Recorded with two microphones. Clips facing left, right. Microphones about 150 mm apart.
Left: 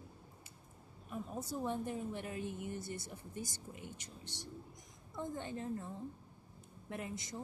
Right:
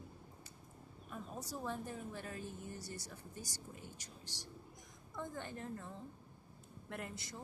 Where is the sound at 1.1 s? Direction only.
20° left (ahead or behind).